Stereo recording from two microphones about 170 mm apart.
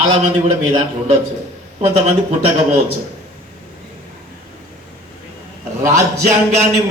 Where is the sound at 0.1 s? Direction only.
35° right (ahead or behind).